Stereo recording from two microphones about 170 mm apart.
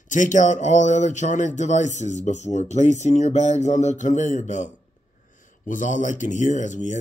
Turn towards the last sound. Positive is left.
turn(degrees=45)  # may be behind; listen again after turning